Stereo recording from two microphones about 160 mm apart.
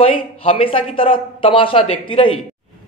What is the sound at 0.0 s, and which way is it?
Speech, 35° left (ahead or behind).